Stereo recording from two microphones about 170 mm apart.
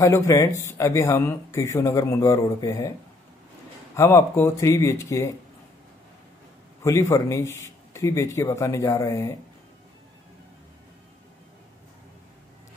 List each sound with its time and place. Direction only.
0.0 s speech: 15° left (ahead or behind)
3.9 s speech: 15° left (ahead or behind)
6.8 s speech: 15° left (ahead or behind)